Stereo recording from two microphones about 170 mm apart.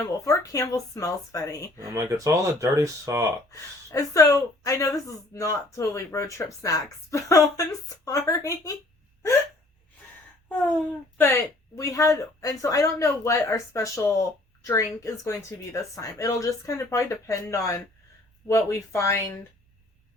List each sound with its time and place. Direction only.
0.0 s speech: 20° left (ahead or behind)
1.8 s speech: 20° right (ahead or behind)
3.5 s speech: 20° left (ahead or behind)
11.8 s speech: 20° left (ahead or behind)